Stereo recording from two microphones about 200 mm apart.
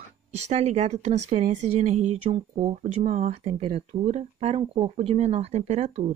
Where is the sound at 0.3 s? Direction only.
35° right (ahead or behind).